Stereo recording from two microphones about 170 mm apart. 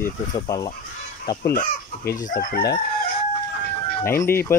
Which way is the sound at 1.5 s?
60° left (ahead or behind).